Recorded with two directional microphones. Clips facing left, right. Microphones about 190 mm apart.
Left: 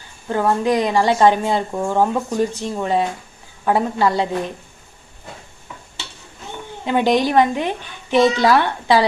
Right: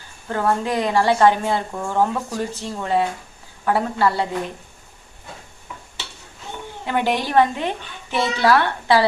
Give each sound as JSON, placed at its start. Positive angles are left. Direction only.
{"t": 0.3, "sound": "speech", "side_deg": 15}
{"t": 6.8, "sound": "a woman's voice", "side_deg": 20}